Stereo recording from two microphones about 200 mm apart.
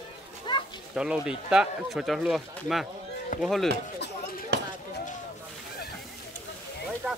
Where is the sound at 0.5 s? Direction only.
25° left (ahead or behind).